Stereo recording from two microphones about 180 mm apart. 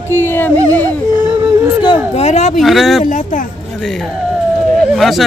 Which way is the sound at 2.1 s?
40° left (ahead or behind).